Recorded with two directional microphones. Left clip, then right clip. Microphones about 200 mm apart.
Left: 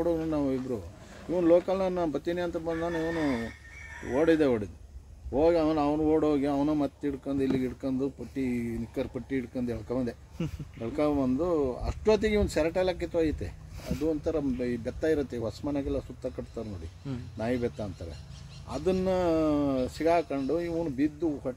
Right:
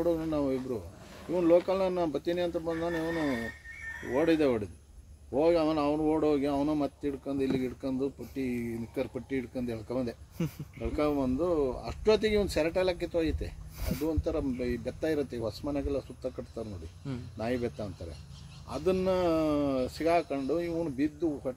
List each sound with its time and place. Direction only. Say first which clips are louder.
0.0 s speech: left 1 dB; 10° left (ahead or behind)
4.1 s speech: left 2 dB; 10° left (ahead or behind)
10.4 s speech: right 1 dB; 35° right (ahead or behind)
10.8 s speech: left 2 dB; 10° left (ahead or behind)